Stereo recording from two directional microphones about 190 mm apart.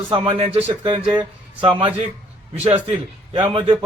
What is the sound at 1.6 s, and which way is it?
A man's voice, 25° right (ahead or behind).